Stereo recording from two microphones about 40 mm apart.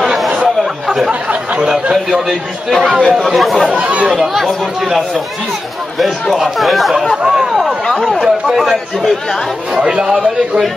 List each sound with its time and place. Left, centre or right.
0.8 s chatter: centre
1.3 s a sound: right
1.7 s speech: centre
2.2 s speech: centre
3.7 s speech: right
4.1 s speech: centre
6.3 s speech: centre
7.2 s a sound: centre
7.8 s chatter: centre
8.5 s speech: centre
9.8 s speech: right